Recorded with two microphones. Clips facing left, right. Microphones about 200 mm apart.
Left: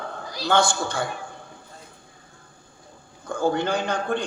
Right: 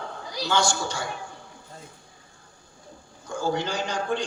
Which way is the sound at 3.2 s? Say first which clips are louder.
Left 4 dB; 55° left (ahead or behind).